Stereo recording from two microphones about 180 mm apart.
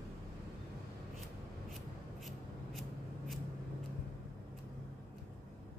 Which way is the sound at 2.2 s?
Centre (ahead or behind).